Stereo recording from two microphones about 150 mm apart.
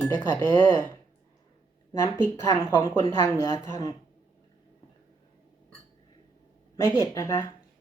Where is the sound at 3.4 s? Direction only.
25° left (ahead or behind).